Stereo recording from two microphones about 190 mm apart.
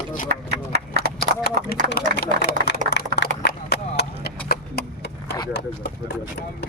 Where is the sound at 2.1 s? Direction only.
60° left (ahead or behind).